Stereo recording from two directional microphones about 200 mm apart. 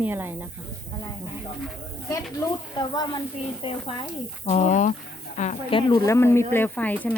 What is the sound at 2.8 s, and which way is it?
Speech, 20° left (ahead or behind).